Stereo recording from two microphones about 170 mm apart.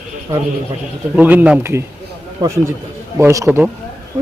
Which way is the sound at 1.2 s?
10° right (ahead or behind).